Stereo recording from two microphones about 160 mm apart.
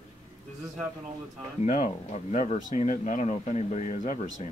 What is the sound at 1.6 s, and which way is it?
Speech, 45° left (ahead or behind).